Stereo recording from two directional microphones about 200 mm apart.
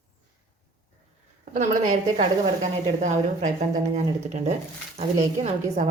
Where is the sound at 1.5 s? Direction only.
40° right (ahead or behind).